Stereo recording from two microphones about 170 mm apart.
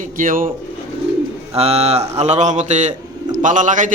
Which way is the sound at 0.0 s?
55° right (ahead or behind).